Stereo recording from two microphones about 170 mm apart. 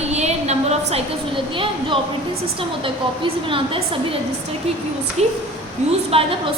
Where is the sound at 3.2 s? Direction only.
30° right (ahead or behind).